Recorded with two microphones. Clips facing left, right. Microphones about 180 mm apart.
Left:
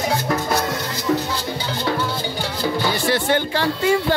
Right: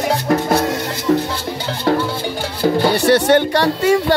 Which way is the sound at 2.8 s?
70° right (ahead or behind).